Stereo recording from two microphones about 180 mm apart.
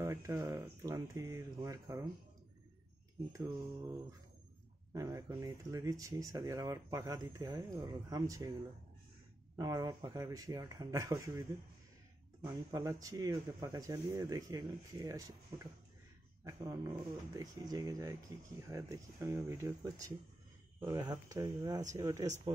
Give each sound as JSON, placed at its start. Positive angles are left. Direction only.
{"t": 0.0, "sound": "speech", "side_deg": -20}
{"t": 3.3, "sound": "speech", "side_deg": -20}
{"t": 4.9, "sound": "speech", "side_deg": -20}
{"t": 9.6, "sound": "speech", "side_deg": -20}
{"t": 12.4, "sound": "speech", "side_deg": -20}